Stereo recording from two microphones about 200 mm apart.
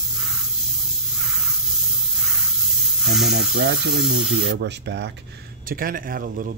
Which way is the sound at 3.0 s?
Centre (ahead or behind).